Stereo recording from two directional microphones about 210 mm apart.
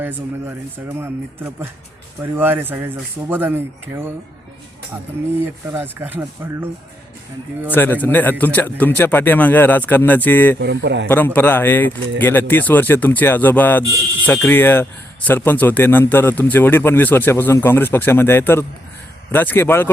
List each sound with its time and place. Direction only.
0.0 s speech: 10° right (ahead or behind)
5.7 s speech: 10° right (ahead or behind)
7.7 s speech: 10° left (ahead or behind)
10.6 s a man's voice: 55° right (ahead or behind)
11.3 s speech: 10° left (ahead or behind)